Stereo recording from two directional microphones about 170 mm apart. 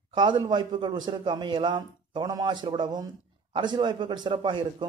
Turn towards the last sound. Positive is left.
turn(degrees=-30)  # may be behind; listen again after turning